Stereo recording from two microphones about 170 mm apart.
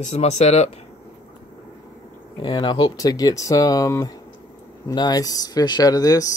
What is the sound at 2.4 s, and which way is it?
Speech, 25° left (ahead or behind).